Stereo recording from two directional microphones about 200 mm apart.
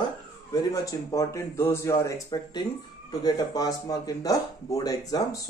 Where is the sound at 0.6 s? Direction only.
15° left (ahead or behind).